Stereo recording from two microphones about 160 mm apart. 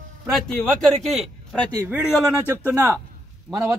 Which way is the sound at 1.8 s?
10° right (ahead or behind).